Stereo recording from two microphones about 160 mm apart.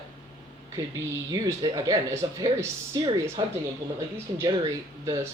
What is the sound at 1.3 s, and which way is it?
Speech, 25° right (ahead or behind).